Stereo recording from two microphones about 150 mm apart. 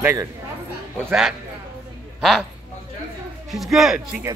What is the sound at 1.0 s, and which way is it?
Speech, 5° right (ahead or behind).